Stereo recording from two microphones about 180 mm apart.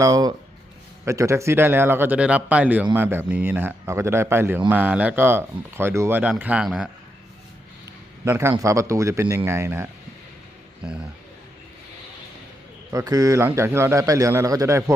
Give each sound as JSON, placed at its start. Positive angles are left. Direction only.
{"t": 0.0, "sound": "a man's voice", "side_deg": -20}
{"t": 8.2, "sound": "a man's voice", "side_deg": -15}
{"t": 12.9, "sound": "a man's voice", "side_deg": -20}